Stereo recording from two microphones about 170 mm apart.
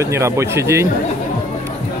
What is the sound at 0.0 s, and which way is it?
Speech, 15° right (ahead or behind).